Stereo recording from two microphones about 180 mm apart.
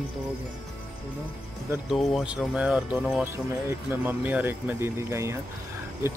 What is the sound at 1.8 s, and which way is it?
Speech, centre (ahead or behind).